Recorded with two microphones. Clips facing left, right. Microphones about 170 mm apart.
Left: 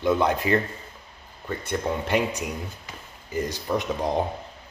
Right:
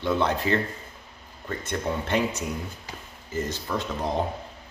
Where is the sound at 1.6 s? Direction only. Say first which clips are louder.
Left 2 dB; 10° left (ahead or behind).